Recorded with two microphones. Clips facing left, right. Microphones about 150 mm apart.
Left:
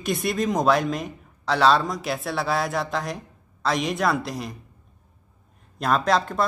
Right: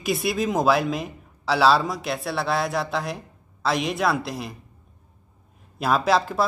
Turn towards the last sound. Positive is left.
turn(degrees=-5)  # may be behind; listen again after turning